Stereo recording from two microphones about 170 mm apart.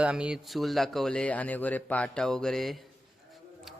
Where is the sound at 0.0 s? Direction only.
5° right (ahead or behind).